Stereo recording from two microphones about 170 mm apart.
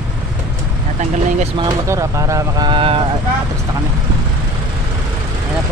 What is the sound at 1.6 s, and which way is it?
Speech, 15° right (ahead or behind).